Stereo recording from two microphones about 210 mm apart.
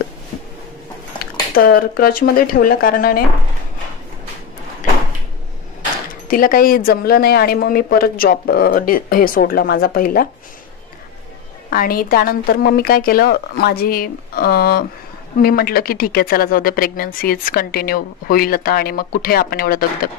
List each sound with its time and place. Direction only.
1.6 s speech: 45° left (ahead or behind)
6.2 s speech: 40° left (ahead or behind)
11.7 s speech: 45° left (ahead or behind)